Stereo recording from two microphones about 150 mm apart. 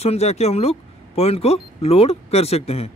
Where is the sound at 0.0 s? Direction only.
45° left (ahead or behind).